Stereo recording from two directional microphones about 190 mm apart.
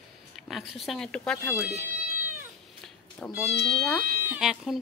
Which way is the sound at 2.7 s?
Centre (ahead or behind).